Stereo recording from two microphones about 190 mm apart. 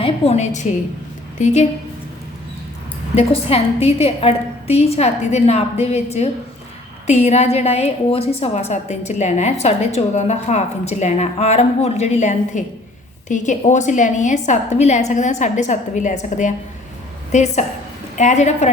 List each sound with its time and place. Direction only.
0.0 s a woman's voice: 35° left (ahead or behind)
3.2 s a woman's voice: 35° left (ahead or behind)